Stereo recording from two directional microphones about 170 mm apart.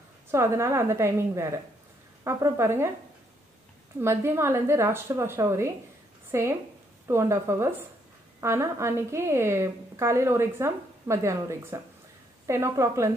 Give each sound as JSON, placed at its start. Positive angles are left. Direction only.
{"t": 0.3, "sound": "a woman's voice", "side_deg": -15}
{"t": 4.0, "sound": "a woman's voice", "side_deg": -15}